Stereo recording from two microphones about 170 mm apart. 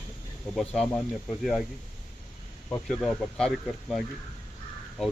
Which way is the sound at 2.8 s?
5° left (ahead or behind).